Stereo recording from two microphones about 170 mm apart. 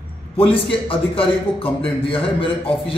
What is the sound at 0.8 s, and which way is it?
A man's voice, 30° left (ahead or behind).